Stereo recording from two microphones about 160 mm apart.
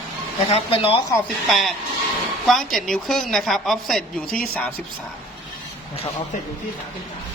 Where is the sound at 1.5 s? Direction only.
Centre (ahead or behind).